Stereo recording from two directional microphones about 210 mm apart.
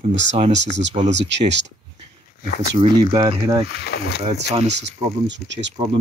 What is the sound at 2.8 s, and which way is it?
Speech, 20° right (ahead or behind).